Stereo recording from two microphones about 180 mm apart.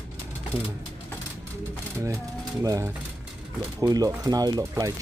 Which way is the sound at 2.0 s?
15° right (ahead or behind).